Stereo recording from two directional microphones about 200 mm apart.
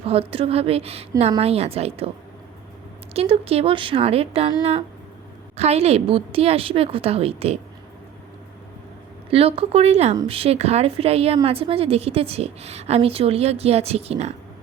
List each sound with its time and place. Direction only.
0.0 s a woman's voice: 30° right (ahead or behind)
3.1 s a woman's voice: 30° right (ahead or behind)
5.5 s a woman's voice: 30° right (ahead or behind)
9.3 s a woman's voice: 30° right (ahead or behind)